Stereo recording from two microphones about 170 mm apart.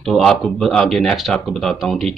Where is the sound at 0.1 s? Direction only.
Centre (ahead or behind).